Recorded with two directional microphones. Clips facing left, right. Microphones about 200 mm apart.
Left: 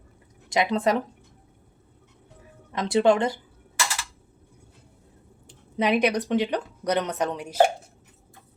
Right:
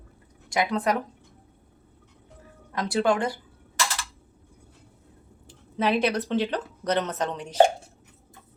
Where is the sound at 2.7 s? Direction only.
20° left (ahead or behind).